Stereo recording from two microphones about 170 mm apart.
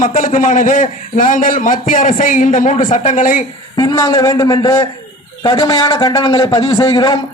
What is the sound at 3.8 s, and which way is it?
Speech, 20° left (ahead or behind).